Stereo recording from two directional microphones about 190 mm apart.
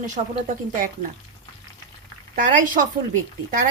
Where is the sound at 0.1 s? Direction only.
45° right (ahead or behind).